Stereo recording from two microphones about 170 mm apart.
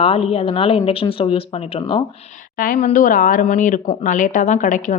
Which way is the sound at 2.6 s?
50° left (ahead or behind).